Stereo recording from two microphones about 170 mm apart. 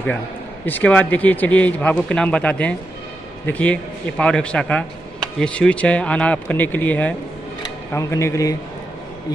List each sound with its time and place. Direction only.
0.7 s speech: 10° left (ahead or behind)